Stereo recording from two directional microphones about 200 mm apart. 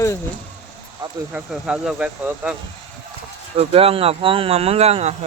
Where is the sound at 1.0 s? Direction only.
20° right (ahead or behind).